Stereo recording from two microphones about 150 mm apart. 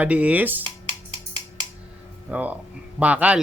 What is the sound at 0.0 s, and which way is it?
Speech, 10° right (ahead or behind).